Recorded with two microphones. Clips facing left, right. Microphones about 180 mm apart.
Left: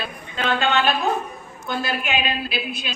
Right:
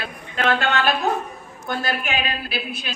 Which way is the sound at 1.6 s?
40° right (ahead or behind).